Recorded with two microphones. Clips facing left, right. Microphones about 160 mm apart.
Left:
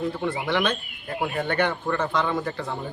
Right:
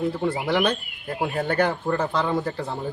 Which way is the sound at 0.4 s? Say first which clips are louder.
Right 2 dB; 35° right (ahead or behind).